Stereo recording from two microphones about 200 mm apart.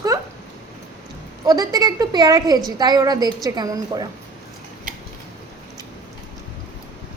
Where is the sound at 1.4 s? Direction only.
20° right (ahead or behind).